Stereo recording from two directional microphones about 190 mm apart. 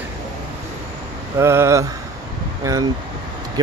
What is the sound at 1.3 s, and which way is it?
Speech, 15° right (ahead or behind).